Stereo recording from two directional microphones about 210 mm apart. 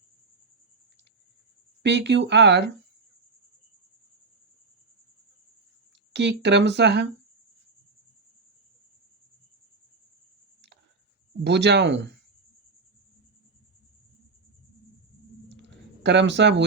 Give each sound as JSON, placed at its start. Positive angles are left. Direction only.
{"t": 1.8, "sound": "speech", "side_deg": -55}
{"t": 6.1, "sound": "speech", "side_deg": -55}
{"t": 11.4, "sound": "speech", "side_deg": -55}
{"t": 15.4, "sound": "a sound", "side_deg": -55}